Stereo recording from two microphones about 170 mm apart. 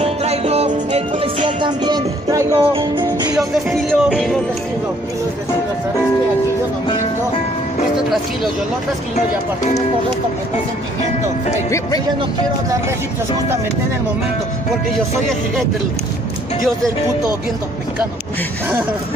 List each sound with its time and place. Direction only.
0.0 s music: 40° right (ahead or behind)
3.9 s music: 5° left (ahead or behind)